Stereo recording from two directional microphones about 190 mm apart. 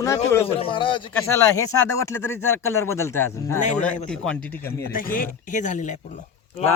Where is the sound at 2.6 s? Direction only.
90° left.